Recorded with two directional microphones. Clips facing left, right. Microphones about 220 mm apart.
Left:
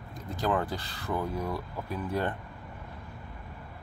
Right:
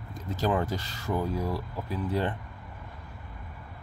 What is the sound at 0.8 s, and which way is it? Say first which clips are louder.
Speech: even; 60° left (ahead or behind).